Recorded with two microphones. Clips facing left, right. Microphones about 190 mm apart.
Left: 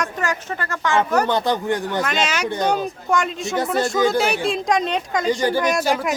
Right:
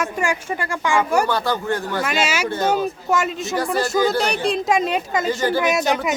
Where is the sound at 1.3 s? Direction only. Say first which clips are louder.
Left 1 dB; 20° left (ahead or behind).